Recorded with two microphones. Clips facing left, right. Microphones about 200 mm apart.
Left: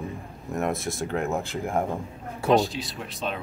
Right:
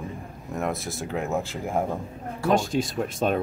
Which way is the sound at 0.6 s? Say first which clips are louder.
Left 2 dB; centre (ahead or behind).